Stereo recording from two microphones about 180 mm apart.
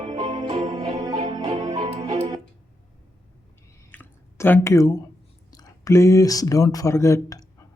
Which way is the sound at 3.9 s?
10° left (ahead or behind).